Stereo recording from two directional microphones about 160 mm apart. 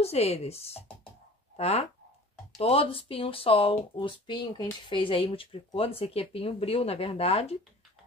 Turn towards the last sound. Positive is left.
turn(degrees=40)  # may be behind; listen again after turning